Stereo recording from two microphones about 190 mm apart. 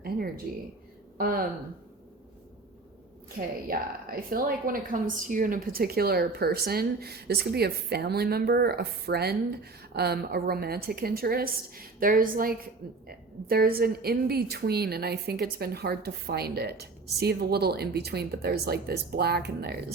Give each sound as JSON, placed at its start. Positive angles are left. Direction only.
{"t": 1.2, "sound": "a woman's voice", "side_deg": -50}
{"t": 3.4, "sound": "a woman's voice", "side_deg": -50}